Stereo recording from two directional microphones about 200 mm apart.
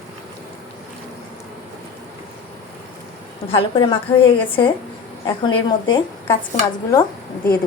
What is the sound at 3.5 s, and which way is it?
Speech, 25° left (ahead or behind).